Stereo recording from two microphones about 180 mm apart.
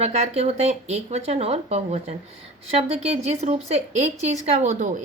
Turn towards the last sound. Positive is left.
turn(degrees=-40)  # may be behind; listen again after turning